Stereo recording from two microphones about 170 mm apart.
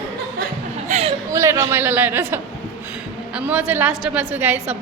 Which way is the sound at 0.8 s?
40° right (ahead or behind).